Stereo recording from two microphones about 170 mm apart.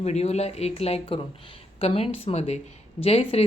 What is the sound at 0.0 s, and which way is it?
A woman's voice, 40° left (ahead or behind).